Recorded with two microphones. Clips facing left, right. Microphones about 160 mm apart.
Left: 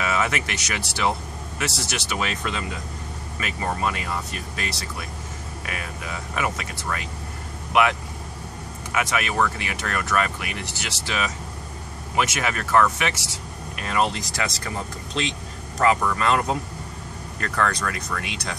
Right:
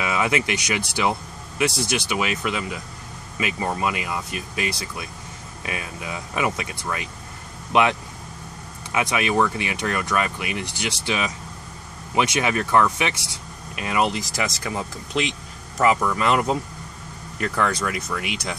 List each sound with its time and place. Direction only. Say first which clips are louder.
0.0 s speech: right 2 dB; 15° right (ahead or behind)
8.9 s speech: right 3 dB; 20° right (ahead or behind)
15.8 s speech: right 1 dB; 10° right (ahead or behind)